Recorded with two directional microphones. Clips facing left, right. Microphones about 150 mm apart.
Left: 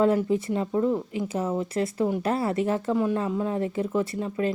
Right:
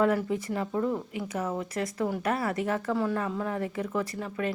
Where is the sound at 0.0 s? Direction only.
25° left (ahead or behind).